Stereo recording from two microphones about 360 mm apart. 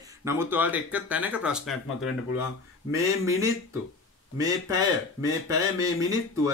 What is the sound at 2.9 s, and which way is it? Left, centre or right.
Speech, centre.